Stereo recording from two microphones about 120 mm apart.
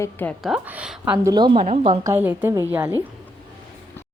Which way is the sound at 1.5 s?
60° right (ahead or behind).